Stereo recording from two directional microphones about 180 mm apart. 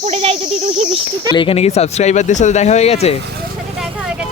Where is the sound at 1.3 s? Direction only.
30° left (ahead or behind).